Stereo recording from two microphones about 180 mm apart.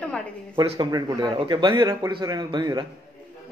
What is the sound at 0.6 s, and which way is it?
Speech, 25° right (ahead or behind).